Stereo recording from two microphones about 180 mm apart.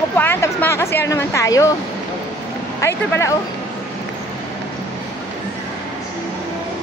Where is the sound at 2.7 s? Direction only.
15° left (ahead or behind).